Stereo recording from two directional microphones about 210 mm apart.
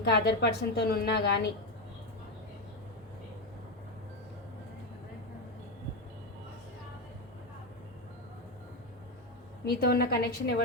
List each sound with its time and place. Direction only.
0.0 s a woman's voice: 50° left (ahead or behind)
9.6 s a woman's voice: 50° left (ahead or behind)